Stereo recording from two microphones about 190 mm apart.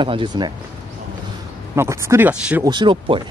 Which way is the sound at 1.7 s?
15° right (ahead or behind).